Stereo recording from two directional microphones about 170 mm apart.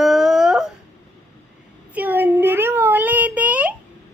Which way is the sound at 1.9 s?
10° right (ahead or behind).